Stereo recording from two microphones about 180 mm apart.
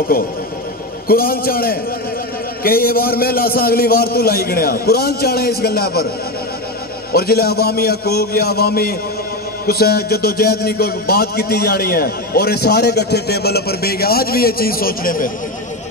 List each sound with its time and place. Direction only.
1.0 s a man's voice: 55° left (ahead or behind)
7.1 s a man's voice: 60° left (ahead or behind)